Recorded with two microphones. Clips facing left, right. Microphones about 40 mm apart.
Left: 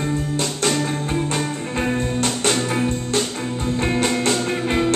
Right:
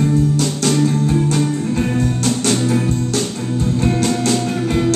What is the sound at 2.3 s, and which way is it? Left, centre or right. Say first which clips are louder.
Music: right 4 dB; left.